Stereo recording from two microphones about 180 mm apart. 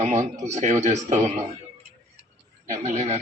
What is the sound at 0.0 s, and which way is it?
Speech, 40° right (ahead or behind).